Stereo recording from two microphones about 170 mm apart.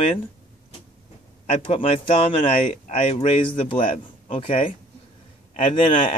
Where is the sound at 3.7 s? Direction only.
50° left (ahead or behind).